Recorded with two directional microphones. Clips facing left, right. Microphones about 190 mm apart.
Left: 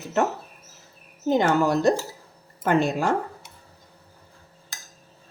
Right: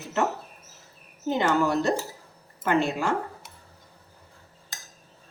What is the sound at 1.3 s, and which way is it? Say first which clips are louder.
A woman's voice: left 3 dB; 40° left (ahead or behind).